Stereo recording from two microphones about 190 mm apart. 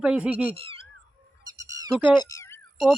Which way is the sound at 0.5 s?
30° right (ahead or behind).